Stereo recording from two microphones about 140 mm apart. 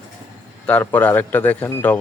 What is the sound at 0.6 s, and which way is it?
Speech, 10° left (ahead or behind).